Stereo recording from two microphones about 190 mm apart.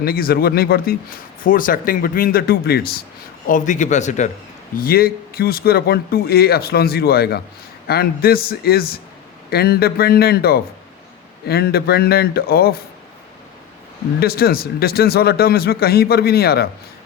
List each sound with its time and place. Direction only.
0.0 s speech: 50° left (ahead or behind)
3.4 s a man's voice: 45° left (ahead or behind)
4.8 s speech: 50° left (ahead or behind)
14.2 s speech: 55° left (ahead or behind)